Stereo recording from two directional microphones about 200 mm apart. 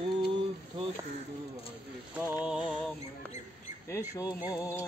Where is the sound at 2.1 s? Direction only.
10° right (ahead or behind).